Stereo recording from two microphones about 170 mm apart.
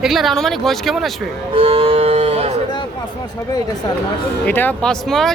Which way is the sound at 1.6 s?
35° right (ahead or behind).